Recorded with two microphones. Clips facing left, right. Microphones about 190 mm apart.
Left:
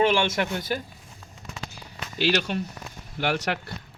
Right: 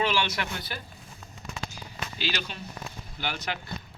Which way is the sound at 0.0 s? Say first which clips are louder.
Left 6 dB; 50° left (ahead or behind).